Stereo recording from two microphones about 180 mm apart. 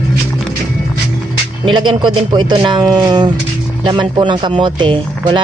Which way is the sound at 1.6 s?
25° right (ahead or behind).